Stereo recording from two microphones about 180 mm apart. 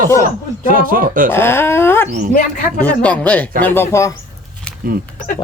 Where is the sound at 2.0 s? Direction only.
45° right (ahead or behind).